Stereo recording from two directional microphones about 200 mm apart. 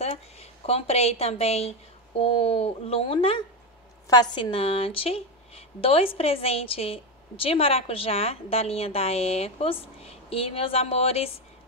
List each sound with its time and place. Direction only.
0.0 s a woman's voice: 30° left (ahead or behind)